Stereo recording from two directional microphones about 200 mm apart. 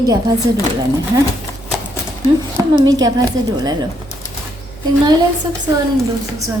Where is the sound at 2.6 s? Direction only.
20° right (ahead or behind).